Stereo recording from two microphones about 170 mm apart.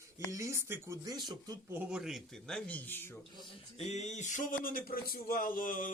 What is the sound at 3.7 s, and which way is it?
Speech, 40° left (ahead or behind).